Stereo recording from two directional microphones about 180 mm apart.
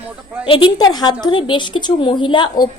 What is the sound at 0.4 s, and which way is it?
A woman's voice, 25° left (ahead or behind).